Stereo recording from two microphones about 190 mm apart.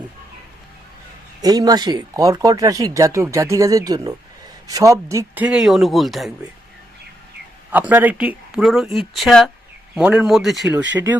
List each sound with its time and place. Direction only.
1.4 s speech: 20° right (ahead or behind); by 6.3 s centre (ahead or behind)
7.7 s speech: 10° right (ahead or behind)